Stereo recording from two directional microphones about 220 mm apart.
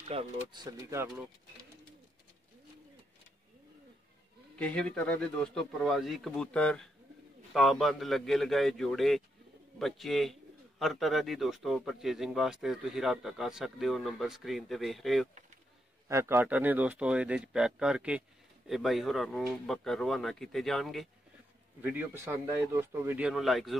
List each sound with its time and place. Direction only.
0.1 s speech: 25° right (ahead or behind)
4.6 s speech: 5° left (ahead or behind)
16.1 s speech: 10° right (ahead or behind)
21.8 s speech: 10° right (ahead or behind)